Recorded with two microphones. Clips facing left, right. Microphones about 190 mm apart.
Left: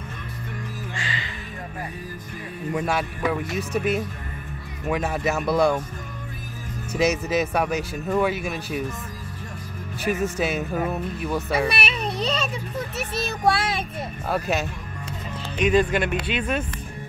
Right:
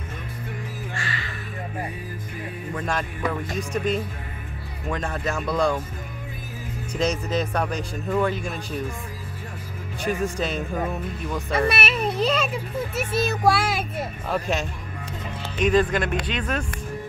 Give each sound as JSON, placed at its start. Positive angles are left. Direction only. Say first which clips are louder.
{"t": 0.9, "sound": "music", "louder": "even", "side_deg": 20}
{"t": 2.7, "sound": "a man's voice", "louder": "left 4 dB", "side_deg": 10}
{"t": 6.9, "sound": "a man's voice", "louder": "left 3 dB", "side_deg": 10}
{"t": 10.0, "sound": "speech", "louder": "left 1 dB", "side_deg": 5}